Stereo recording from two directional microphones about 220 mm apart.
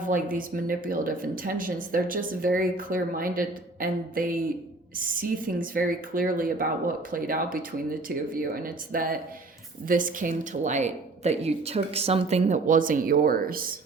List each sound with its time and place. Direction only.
0.0 s speech: 35° right (ahead or behind)